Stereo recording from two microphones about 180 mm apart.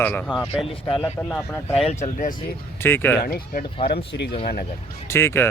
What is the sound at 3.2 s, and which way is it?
Speech, 55° left (ahead or behind).